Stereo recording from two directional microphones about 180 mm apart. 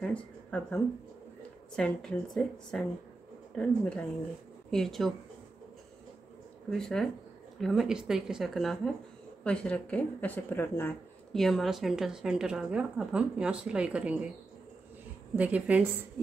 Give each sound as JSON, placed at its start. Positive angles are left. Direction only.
{"t": 0.0, "sound": "a sound", "side_deg": 5}
{"t": 1.8, "sound": "speech", "side_deg": 5}
{"t": 6.7, "sound": "speech", "side_deg": 5}
{"t": 15.3, "sound": "a woman's voice", "side_deg": -10}